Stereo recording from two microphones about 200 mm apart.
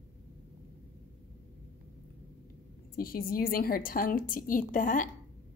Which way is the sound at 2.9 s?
45° left (ahead or behind).